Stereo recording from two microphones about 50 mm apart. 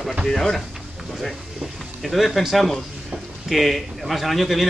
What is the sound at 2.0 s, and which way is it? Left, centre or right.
Speech, centre.